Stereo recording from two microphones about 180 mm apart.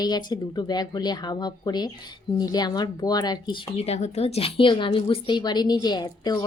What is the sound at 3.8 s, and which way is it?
A woman's voice, 35° left (ahead or behind).